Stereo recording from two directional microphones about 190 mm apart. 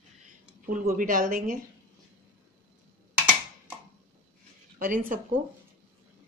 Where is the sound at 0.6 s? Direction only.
45° right (ahead or behind).